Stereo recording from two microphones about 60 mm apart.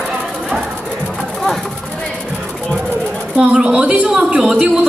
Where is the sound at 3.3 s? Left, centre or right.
Centre.